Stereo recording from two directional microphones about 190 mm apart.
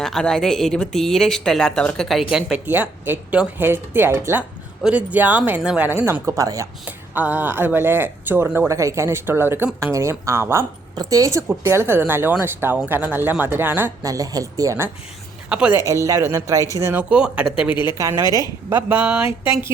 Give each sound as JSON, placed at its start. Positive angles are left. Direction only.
{"t": 0.0, "sound": "a woman's voice", "side_deg": 0}
{"t": 15.4, "sound": "a woman's voice", "side_deg": -5}
{"t": 17.8, "sound": "a woman's voice", "side_deg": -15}